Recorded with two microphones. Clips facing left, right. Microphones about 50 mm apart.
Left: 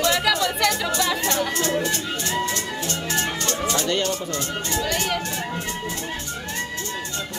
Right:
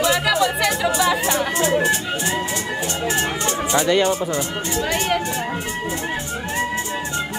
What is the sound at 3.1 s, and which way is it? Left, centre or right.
Speech, centre.